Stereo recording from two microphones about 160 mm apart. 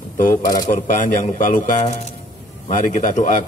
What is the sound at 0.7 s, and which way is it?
A man's voice, 50° left (ahead or behind).